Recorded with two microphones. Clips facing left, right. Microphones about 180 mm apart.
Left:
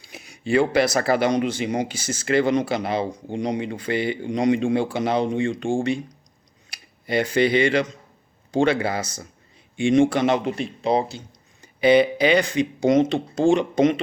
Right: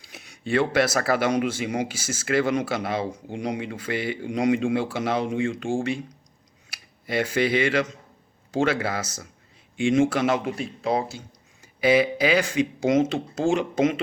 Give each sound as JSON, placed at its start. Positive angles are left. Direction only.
{"t": 0.0, "sound": "a man's voice", "side_deg": 0}